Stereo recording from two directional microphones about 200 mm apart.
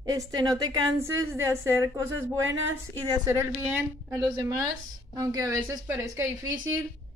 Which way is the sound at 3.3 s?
10° right (ahead or behind).